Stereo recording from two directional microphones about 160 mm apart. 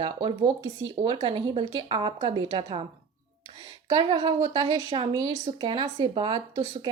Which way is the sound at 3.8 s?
25° right (ahead or behind).